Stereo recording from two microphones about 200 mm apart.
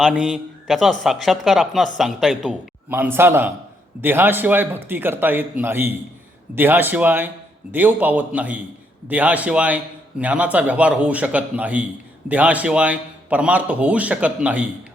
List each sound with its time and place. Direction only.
0.0 s speech: centre (ahead or behind)